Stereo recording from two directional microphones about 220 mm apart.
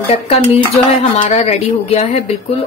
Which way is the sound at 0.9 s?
30° left (ahead or behind).